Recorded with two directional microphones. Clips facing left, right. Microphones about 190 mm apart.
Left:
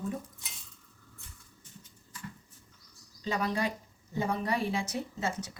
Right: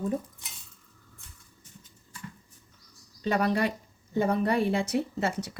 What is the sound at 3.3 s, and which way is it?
A woman's voice, 60° right (ahead or behind).